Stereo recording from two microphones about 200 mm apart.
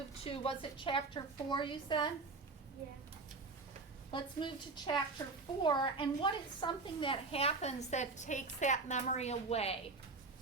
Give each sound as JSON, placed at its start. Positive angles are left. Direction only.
{"t": 0.1, "sound": "a woman's voice", "side_deg": 30}
{"t": 4.1, "sound": "a woman's voice", "side_deg": 25}